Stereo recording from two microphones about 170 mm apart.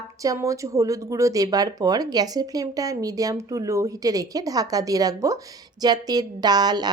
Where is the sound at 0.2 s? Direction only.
20° right (ahead or behind).